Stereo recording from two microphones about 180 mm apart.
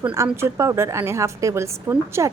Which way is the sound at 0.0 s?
15° right (ahead or behind).